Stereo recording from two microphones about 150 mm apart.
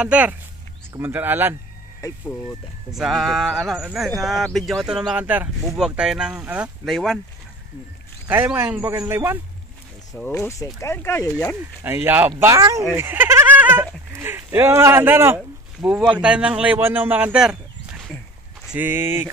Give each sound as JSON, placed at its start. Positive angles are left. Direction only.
{"t": 0.0, "sound": "speech", "side_deg": -10}
{"t": 2.0, "sound": "speech", "side_deg": 20}
{"t": 2.9, "sound": "speech", "side_deg": 0}
{"t": 8.3, "sound": "speech", "side_deg": -15}
{"t": 10.2, "sound": "speech", "side_deg": 15}
{"t": 11.8, "sound": "speech", "side_deg": -15}
{"t": 18.7, "sound": "speech", "side_deg": -15}